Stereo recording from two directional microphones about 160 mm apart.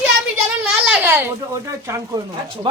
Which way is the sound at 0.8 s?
10° right (ahead or behind).